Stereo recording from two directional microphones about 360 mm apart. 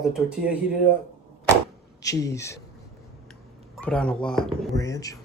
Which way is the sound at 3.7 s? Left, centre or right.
Centre.